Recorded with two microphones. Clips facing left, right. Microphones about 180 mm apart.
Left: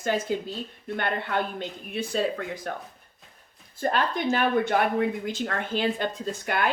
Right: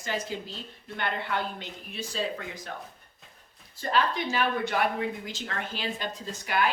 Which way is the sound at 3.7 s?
50° left (ahead or behind).